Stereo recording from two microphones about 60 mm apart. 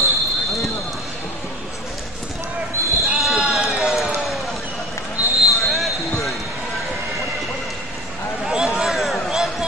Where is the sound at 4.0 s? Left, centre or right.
Centre.